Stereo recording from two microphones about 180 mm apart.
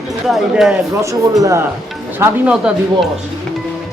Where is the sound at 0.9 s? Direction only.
20° right (ahead or behind).